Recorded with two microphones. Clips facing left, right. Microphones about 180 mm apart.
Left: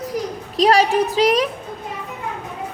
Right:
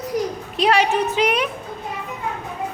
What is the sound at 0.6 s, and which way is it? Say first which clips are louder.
Speech: left 3 dB; 35° left (ahead or behind).